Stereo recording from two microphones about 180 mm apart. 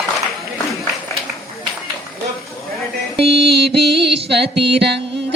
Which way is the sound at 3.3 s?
65° right (ahead or behind).